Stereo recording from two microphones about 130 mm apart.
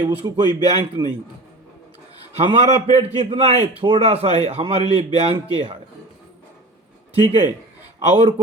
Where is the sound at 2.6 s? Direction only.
55° right (ahead or behind).